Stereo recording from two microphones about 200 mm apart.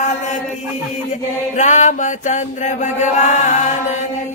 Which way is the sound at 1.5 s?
40° left (ahead or behind).